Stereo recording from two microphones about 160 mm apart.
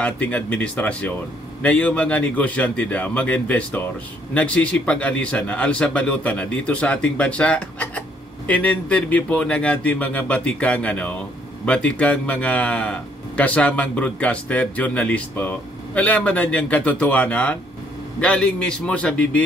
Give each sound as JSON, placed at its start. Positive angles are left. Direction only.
{"t": 0.0, "sound": "speech", "side_deg": 10}